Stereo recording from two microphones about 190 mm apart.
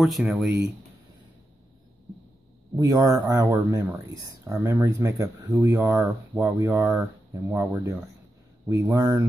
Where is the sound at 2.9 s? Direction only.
20° right (ahead or behind).